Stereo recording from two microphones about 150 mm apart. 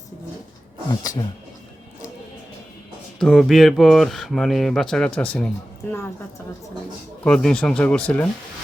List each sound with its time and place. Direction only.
0.9 s speech: 25° left (ahead or behind)
3.2 s speech: centre (ahead or behind)
7.3 s speech: 5° left (ahead or behind)